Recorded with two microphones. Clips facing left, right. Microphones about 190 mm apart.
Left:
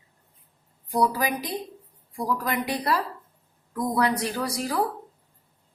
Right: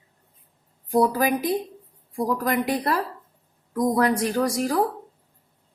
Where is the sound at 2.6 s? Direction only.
50° right (ahead or behind).